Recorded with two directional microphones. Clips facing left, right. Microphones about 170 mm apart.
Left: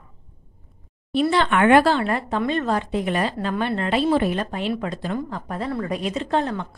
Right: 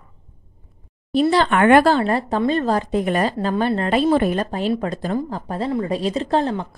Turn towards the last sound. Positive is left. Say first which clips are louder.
# right 3 dB
turn(degrees=-30)  # may be behind; listen again after turning